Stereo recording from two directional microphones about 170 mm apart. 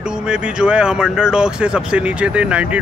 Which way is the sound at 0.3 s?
5° right (ahead or behind).